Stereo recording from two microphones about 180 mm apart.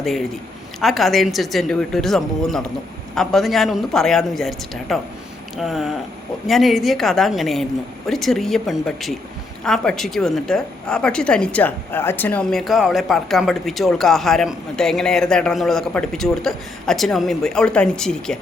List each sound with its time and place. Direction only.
0.0 s a man's voice: centre (ahead or behind)